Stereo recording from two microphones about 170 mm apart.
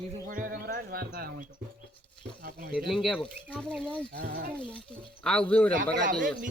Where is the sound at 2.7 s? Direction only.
Centre (ahead or behind).